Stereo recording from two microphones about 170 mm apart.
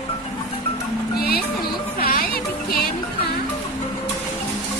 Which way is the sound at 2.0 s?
60° left (ahead or behind).